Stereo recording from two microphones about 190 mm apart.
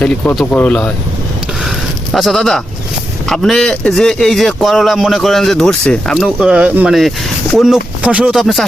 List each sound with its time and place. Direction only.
0.0 s a man's voice: 5° left (ahead or behind)
2.1 s a man's voice: centre (ahead or behind)